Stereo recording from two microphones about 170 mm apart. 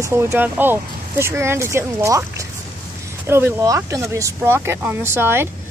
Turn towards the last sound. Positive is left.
turn(degrees=-15)  # may be behind; listen again after turning